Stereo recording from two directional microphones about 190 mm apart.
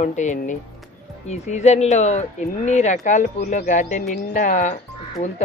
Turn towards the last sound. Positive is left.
turn(degrees=40)  # may be behind; listen again after turning